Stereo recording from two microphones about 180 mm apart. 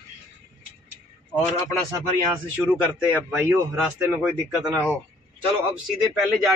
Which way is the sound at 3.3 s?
10° right (ahead or behind).